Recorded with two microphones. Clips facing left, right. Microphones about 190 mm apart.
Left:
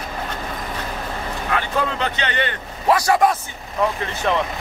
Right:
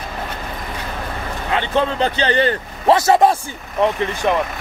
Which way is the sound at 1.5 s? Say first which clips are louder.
Right 4 dB; 25° right (ahead or behind).